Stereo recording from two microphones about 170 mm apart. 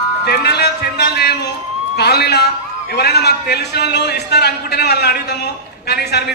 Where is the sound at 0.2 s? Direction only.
70° left (ahead or behind).